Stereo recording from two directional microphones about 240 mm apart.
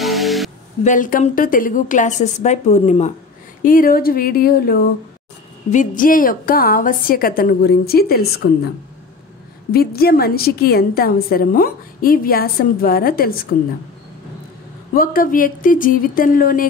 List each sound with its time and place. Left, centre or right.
0.0 s music: centre
0.8 s a woman's voice: left
9.7 s a woman's voice: left
15.0 s a woman's voice: left